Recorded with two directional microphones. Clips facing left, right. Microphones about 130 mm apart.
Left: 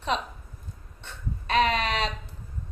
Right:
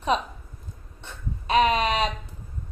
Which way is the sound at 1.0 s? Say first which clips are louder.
Right 2 dB; 15° right (ahead or behind).